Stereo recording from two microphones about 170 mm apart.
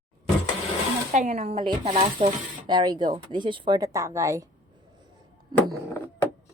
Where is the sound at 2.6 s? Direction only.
25° right (ahead or behind).